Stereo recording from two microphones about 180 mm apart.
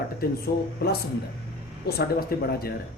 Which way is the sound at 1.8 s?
60° left (ahead or behind).